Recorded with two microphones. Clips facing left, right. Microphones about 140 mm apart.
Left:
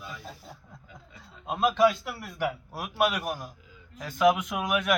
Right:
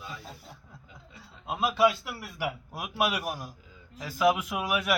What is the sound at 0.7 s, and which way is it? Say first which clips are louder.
A man's voice: left 1 dB; 5° right (ahead or behind).